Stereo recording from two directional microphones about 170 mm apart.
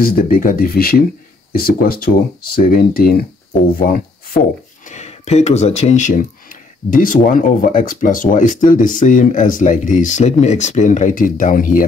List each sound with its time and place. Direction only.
0.0 s speech: 55° left (ahead or behind)
4.8 s speech: 40° left (ahead or behind)